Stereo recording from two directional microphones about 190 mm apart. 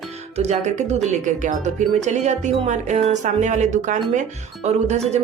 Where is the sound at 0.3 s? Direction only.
35° right (ahead or behind).